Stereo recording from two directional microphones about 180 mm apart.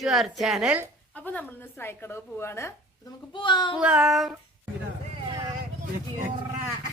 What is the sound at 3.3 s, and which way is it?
Speech, 25° left (ahead or behind).